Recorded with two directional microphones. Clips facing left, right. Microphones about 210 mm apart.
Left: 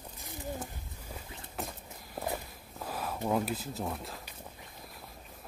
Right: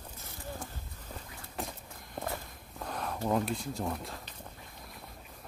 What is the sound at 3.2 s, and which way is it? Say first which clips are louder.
Speech: right 1 dB; 5° left (ahead or behind).